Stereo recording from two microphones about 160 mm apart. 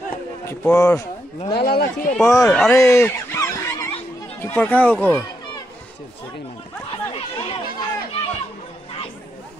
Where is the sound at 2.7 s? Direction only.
20° left (ahead or behind).